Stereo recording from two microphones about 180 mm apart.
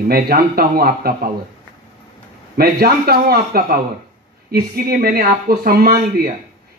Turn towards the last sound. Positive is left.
turn(degrees=-60)  # may be behind; listen again after turning